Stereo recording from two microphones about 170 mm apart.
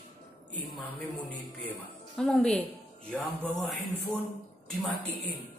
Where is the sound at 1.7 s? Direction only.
5° left (ahead or behind).